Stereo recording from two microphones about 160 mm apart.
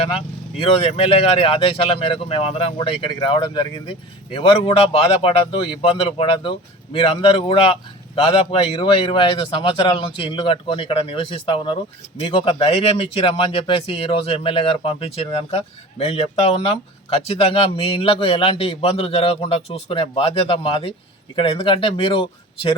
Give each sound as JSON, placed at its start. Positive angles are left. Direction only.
{"t": 0.6, "sound": "a man's voice", "side_deg": 35}